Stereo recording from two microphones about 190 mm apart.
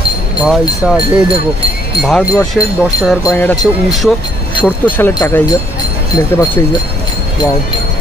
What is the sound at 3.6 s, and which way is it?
Speech, centre (ahead or behind).